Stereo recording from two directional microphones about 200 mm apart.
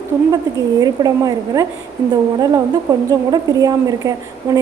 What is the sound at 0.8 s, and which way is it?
Speech, 20° right (ahead or behind).